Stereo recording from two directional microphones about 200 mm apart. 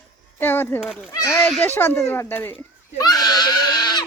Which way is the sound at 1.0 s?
10° left (ahead or behind).